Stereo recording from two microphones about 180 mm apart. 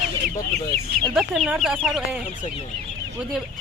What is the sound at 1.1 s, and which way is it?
Speech, centre (ahead or behind).